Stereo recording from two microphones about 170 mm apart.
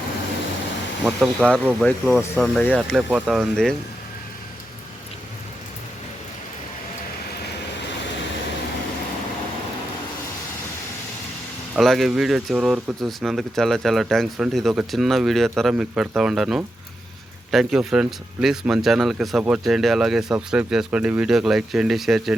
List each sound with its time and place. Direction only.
1.0 s speech: centre (ahead or behind)
3.1 s speech: 5° right (ahead or behind)
11.8 s speech: centre (ahead or behind)